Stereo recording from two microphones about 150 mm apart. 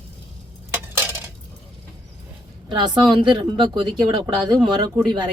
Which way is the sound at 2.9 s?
30° right (ahead or behind).